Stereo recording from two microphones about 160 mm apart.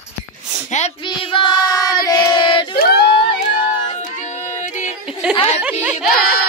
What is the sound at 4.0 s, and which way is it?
Music, 50° left (ahead or behind).